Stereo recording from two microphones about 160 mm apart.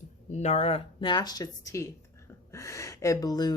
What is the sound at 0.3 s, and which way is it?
A woman's voice, 45° left (ahead or behind).